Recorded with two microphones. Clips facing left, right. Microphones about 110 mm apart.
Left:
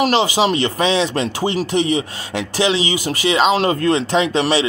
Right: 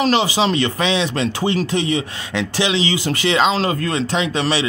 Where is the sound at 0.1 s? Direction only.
20° left (ahead or behind).